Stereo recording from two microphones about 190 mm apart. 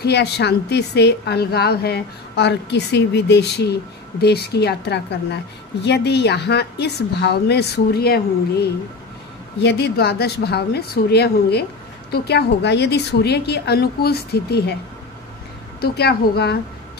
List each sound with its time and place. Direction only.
0.0 s a woman's voice: 60° left (ahead or behind)
15.8 s a woman's voice: 55° left (ahead or behind)